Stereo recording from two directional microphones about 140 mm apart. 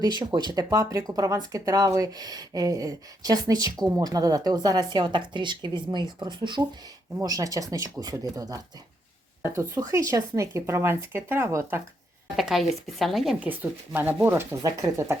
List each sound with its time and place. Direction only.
0.0 s speech: 30° right (ahead or behind)
12.4 s speech: centre (ahead or behind)
13.5 s speech: 15° right (ahead or behind)